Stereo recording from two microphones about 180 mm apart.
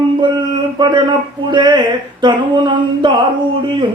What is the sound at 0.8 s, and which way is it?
Speech, 25° right (ahead or behind).